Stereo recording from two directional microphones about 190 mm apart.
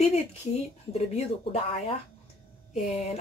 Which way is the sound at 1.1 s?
30° left (ahead or behind).